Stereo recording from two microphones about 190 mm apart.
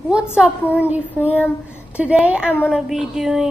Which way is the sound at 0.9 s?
5° right (ahead or behind).